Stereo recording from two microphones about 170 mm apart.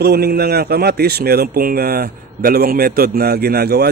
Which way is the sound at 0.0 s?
70° right (ahead or behind).